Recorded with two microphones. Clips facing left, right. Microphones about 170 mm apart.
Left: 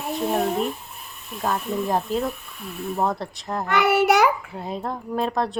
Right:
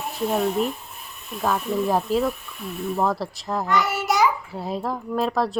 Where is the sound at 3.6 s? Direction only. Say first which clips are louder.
Left 5 dB; 60° left (ahead or behind).